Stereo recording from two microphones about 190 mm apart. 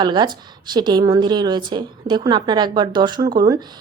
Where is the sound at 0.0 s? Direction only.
25° right (ahead or behind).